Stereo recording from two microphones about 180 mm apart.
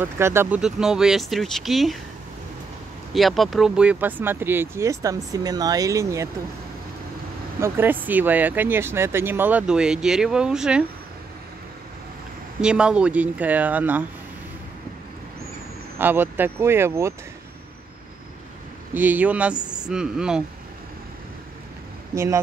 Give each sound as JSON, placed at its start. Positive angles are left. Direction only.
{"t": 0.0, "sound": "speech", "side_deg": -15}
{"t": 3.1, "sound": "speech", "side_deg": 0}
{"t": 7.6, "sound": "speech", "side_deg": -10}
{"t": 12.6, "sound": "speech", "side_deg": -5}
{"t": 16.0, "sound": "speech", "side_deg": -10}
{"t": 18.9, "sound": "speech", "side_deg": -10}
{"t": 22.1, "sound": "speech", "side_deg": -15}